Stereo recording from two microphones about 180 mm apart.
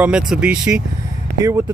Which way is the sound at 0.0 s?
5° right (ahead or behind).